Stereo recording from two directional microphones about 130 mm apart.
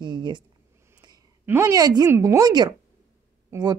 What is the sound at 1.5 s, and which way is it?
A woman's voice, 25° right (ahead or behind).